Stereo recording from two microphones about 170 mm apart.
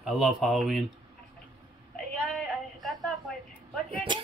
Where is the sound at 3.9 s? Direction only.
35° right (ahead or behind).